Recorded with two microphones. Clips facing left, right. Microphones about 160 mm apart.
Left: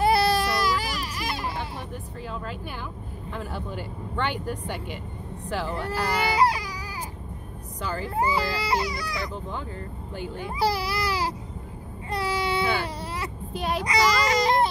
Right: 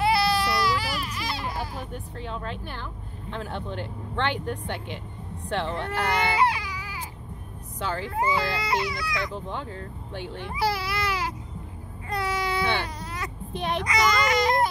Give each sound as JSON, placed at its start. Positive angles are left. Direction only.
{"t": 0.0, "sound": "baby cry", "side_deg": 45}
{"t": 1.9, "sound": "speech", "side_deg": 5}
{"t": 6.3, "sound": "baby cry", "side_deg": 35}
{"t": 7.8, "sound": "speech", "side_deg": 0}
{"t": 8.1, "sound": "speech", "side_deg": 35}
{"t": 9.3, "sound": "speech", "side_deg": 0}
{"t": 10.5, "sound": "speech", "side_deg": 35}
{"t": 12.1, "sound": "a sound", "side_deg": 30}
{"t": 13.5, "sound": "a child's voice", "side_deg": 5}
{"t": 13.8, "sound": "speech", "side_deg": 35}